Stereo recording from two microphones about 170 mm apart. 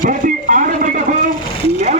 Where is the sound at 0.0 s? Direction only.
55° right (ahead or behind).